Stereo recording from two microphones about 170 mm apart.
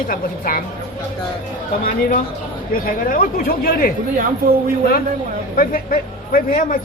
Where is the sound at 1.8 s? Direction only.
55° left (ahead or behind).